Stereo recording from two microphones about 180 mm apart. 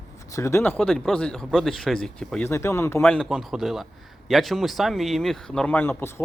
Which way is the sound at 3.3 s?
Centre (ahead or behind).